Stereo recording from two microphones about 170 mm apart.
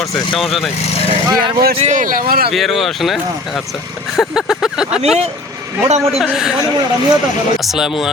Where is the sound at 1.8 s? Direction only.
45° right (ahead or behind).